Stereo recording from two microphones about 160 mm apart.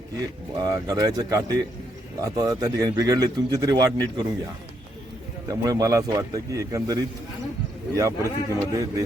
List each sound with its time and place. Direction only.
0.5 s speech: 25° right (ahead or behind)
5.5 s speech: 25° right (ahead or behind)